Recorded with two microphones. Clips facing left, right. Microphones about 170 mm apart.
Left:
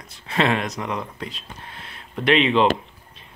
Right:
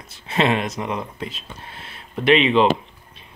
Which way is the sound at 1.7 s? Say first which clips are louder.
Right 1 dB; 25° right (ahead or behind).